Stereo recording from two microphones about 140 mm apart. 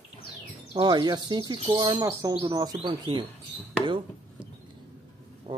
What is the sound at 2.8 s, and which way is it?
Speech, 40° right (ahead or behind).